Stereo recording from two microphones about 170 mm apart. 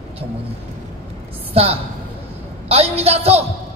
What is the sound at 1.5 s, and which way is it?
Speech, 35° right (ahead or behind).